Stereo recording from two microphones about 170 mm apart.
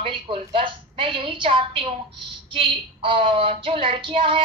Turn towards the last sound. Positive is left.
turn(degrees=-30)  # may be behind; listen again after turning